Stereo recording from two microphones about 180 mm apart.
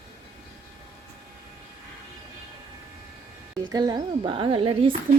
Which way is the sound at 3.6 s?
20° right (ahead or behind).